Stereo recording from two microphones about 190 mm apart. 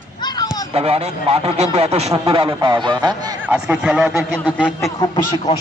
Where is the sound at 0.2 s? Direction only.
20° left (ahead or behind).